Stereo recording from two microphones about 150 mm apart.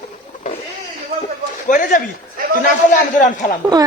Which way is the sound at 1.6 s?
60° left (ahead or behind).